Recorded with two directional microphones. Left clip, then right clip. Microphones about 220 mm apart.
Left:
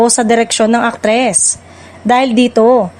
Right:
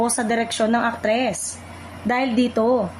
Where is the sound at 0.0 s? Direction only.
40° left (ahead or behind).